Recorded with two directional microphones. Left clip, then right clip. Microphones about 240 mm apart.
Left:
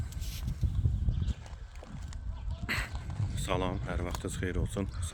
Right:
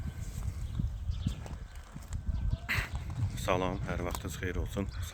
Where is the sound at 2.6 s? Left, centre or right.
Centre.